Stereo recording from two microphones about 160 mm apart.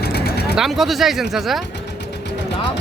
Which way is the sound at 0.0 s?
90° left.